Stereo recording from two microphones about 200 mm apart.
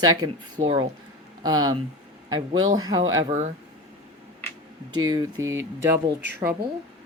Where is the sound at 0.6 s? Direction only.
30° right (ahead or behind).